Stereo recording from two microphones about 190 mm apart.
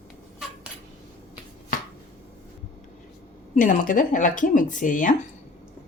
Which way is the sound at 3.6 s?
45° left (ahead or behind).